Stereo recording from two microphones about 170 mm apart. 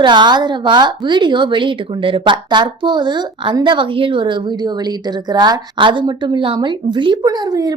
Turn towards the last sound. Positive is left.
turn(degrees=-20)  # may be behind; listen again after turning